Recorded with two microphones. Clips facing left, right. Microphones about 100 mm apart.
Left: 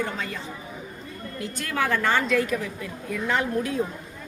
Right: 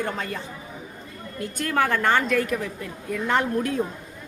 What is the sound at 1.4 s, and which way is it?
A woman's voice, 45° right (ahead or behind).